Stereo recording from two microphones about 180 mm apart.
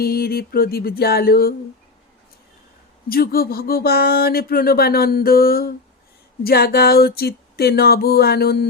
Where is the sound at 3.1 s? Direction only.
55° left (ahead or behind).